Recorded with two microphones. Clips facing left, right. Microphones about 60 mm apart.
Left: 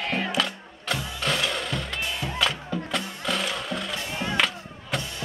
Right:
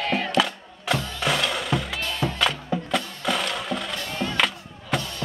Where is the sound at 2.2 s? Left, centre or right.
Right.